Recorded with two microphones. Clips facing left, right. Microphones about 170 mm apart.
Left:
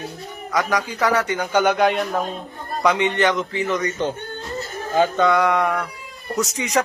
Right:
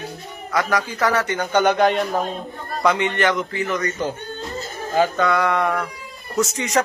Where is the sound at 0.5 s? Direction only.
15° left (ahead or behind).